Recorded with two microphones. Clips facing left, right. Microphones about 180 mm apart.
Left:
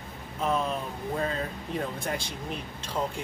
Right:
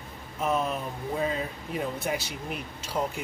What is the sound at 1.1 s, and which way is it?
Speech, 5° right (ahead or behind).